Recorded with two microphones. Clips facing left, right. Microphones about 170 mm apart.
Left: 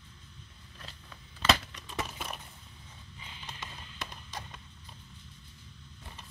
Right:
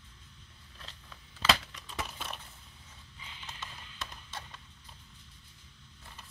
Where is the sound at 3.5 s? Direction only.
15° left (ahead or behind).